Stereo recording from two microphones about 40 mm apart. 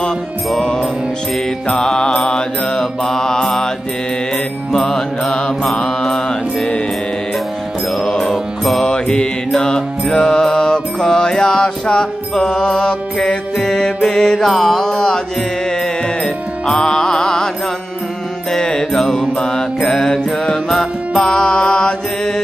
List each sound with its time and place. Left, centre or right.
1.7 s mantra: centre
2.8 s mantra: centre
4.7 s mantra: centre
8.0 s music: centre
8.3 s mantra: centre
8.8 s mantra: centre
9.6 s music: centre
10.2 s mantra: centre
16.6 s mantra: centre
18.5 s mantra: centre